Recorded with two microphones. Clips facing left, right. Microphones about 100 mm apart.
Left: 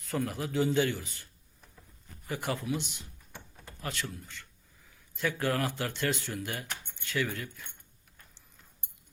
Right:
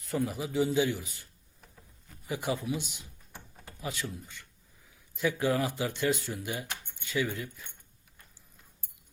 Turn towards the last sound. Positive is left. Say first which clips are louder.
# right 1 dB
turn(degrees=-10)  # may be behind; listen again after turning